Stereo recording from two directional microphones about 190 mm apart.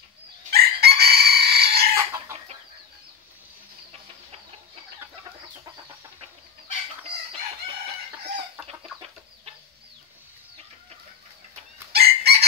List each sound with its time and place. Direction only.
0.5 s chicken: 55° right (ahead or behind)
3.9 s chicken: 35° right (ahead or behind)
8.6 s chicken: 15° right (ahead or behind)
11.9 s chicken: 55° right (ahead or behind)